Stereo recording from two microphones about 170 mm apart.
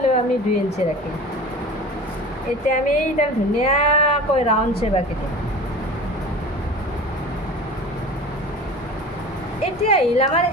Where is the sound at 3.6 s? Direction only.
40° left (ahead or behind).